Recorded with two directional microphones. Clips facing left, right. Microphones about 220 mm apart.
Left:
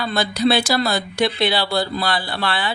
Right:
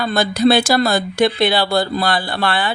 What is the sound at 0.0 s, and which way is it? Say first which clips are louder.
Speech: right 4 dB; 50° right (ahead or behind).